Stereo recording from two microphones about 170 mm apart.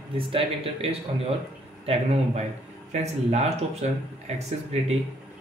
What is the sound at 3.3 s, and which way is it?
Speech, 40° right (ahead or behind).